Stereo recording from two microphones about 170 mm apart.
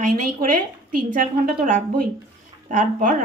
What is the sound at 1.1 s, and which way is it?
A woman's voice, 55° right (ahead or behind).